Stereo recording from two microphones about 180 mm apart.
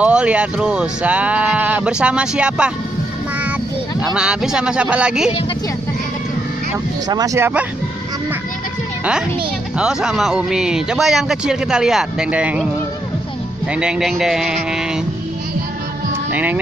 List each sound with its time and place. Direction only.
0.0 s speech: 5° right (ahead or behind)
4.0 s a man's voice: 5° right (ahead or behind)
7.1 s speech: 20° right (ahead or behind)
9.8 s a man's voice: 5° right (ahead or behind)
13.7 s a man's voice: 5° right (ahead or behind)
16.3 s speech: 10° right (ahead or behind)